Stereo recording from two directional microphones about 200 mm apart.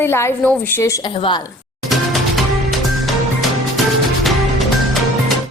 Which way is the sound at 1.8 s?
Centre (ahead or behind).